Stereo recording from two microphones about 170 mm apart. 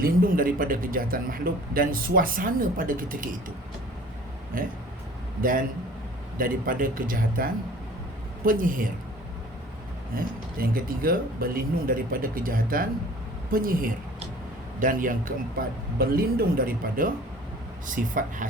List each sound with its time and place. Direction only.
0.0 s a man's voice: 55° right (ahead or behind)
4.5 s a man's voice: 55° right (ahead or behind)
10.2 s a man's voice: 55° right (ahead or behind)